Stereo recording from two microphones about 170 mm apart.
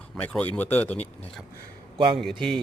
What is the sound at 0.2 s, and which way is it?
Speech, 10° left (ahead or behind).